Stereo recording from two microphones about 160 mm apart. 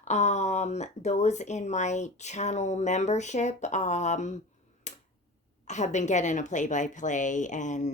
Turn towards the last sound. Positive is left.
turn(degrees=50)  # may be behind; listen again after turning